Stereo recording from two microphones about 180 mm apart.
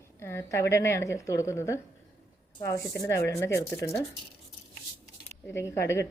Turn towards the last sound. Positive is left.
turn(degrees=15)  # may be behind; listen again after turning